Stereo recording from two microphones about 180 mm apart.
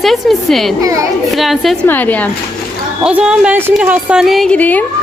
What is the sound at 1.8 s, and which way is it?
Speech, 10° left (ahead or behind).